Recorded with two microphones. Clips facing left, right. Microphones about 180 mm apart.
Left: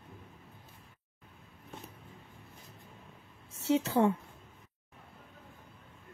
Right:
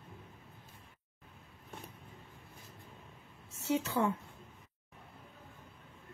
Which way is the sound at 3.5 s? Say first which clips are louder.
Left 5 dB; 30° left (ahead or behind).